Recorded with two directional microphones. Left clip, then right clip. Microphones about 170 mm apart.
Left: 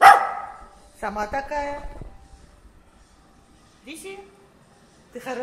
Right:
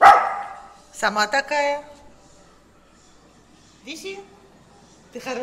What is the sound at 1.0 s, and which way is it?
Speech, 25° right (ahead or behind).